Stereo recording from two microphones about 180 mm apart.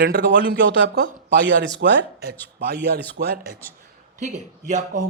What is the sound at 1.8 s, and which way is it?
Speech, 60° right (ahead or behind).